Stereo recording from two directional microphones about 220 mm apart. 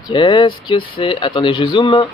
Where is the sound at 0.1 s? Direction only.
20° left (ahead or behind).